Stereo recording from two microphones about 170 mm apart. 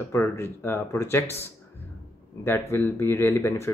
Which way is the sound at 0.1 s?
15° left (ahead or behind).